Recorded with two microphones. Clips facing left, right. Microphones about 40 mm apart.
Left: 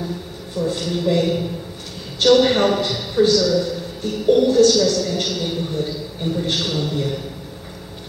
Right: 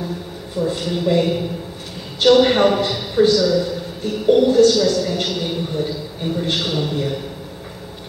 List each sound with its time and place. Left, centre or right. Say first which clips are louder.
0.6 s a man's voice: right 1 dB; centre